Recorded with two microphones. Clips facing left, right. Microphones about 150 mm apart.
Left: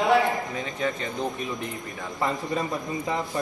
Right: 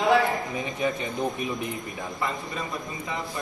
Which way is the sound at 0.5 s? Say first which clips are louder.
Right 1 dB; 15° right (ahead or behind).